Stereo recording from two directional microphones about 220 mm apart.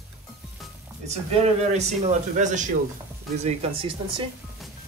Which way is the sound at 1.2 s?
30° right (ahead or behind).